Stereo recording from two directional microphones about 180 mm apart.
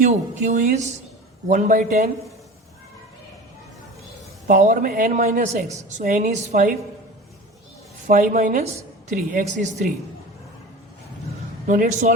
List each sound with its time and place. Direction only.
0.0 s a woman's voice: 45° right (ahead or behind)
4.4 s a woman's voice: 50° right (ahead or behind)
8.0 s a woman's voice: 45° right (ahead or behind)
11.6 s a woman's voice: 45° right (ahead or behind)